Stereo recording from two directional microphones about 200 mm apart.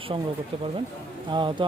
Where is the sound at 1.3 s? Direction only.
25° right (ahead or behind).